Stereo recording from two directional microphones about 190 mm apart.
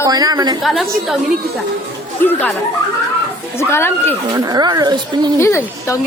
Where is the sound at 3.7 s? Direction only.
10° left (ahead or behind).